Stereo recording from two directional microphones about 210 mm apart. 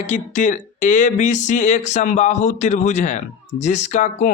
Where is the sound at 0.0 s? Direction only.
35° left (ahead or behind).